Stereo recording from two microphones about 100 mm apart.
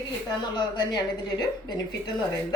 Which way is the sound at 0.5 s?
45° left (ahead or behind).